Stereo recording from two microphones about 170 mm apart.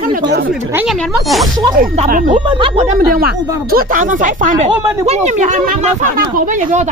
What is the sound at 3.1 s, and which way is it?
Speech, 60° right (ahead or behind).